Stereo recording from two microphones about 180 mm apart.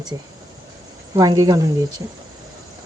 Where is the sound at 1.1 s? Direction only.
20° right (ahead or behind).